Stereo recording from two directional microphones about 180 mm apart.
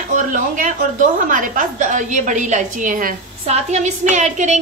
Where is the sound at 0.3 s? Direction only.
45° right (ahead or behind).